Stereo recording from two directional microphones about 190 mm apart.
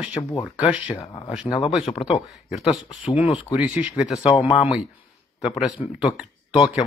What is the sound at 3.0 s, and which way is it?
Speech, 5° right (ahead or behind).